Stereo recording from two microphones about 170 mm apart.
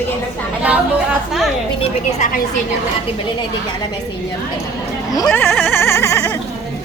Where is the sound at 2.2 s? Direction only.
55° left (ahead or behind).